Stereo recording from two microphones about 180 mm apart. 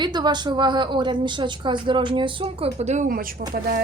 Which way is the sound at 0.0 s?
25° right (ahead or behind).